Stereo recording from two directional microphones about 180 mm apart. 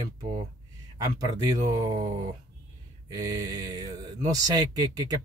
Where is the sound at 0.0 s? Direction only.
20° right (ahead or behind).